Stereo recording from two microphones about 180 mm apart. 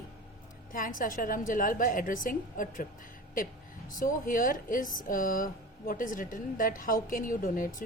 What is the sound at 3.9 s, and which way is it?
Speech, 50° left (ahead or behind).